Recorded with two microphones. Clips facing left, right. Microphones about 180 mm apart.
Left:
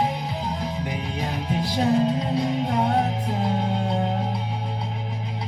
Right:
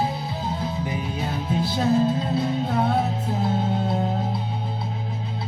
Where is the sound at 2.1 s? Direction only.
15° left (ahead or behind).